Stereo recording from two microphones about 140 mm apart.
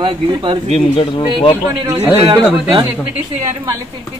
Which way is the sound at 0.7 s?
35° left (ahead or behind).